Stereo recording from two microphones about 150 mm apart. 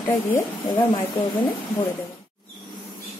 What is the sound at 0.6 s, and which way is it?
Speech, 30° left (ahead or behind).